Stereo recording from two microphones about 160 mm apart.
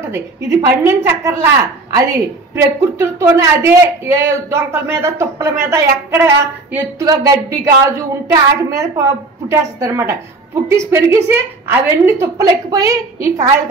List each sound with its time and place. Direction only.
0.0 s a woman's voice: 15° right (ahead or behind)